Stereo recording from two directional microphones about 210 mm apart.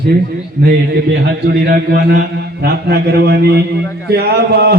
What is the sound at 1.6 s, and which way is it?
Mantra, 50° right (ahead or behind).